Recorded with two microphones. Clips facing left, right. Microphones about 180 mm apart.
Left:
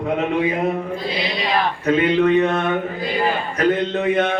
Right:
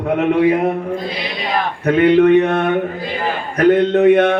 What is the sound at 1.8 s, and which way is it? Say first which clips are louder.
A man's voice: right 6 dB; 60° right (ahead or behind).